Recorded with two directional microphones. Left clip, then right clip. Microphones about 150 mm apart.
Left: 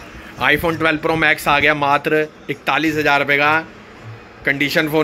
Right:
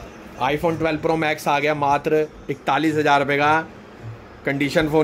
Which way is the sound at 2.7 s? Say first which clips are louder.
Left 2 dB; 10° right (ahead or behind).